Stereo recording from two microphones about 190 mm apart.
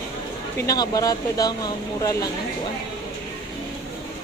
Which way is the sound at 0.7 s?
20° left (ahead or behind).